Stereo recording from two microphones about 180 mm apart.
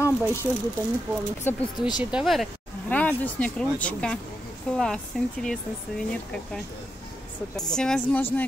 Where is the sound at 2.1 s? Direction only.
Centre (ahead or behind).